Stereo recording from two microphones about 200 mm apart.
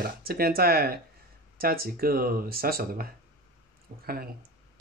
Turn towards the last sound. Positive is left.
turn(degrees=-50)  # may be behind; listen again after turning